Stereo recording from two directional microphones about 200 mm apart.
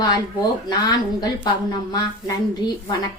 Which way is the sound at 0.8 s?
20° left (ahead or behind).